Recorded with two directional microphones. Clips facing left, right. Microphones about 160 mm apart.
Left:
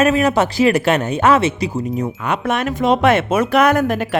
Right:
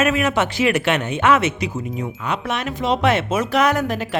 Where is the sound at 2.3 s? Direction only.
50° left (ahead or behind).